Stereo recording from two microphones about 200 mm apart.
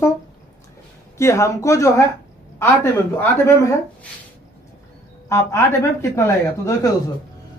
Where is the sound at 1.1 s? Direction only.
15° left (ahead or behind).